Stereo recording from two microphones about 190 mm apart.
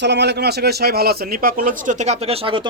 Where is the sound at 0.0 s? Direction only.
65° right (ahead or behind).